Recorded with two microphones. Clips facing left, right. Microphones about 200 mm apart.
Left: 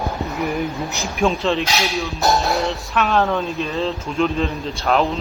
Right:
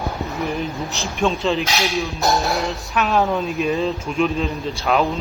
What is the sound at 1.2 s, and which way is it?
Speech, centre (ahead or behind).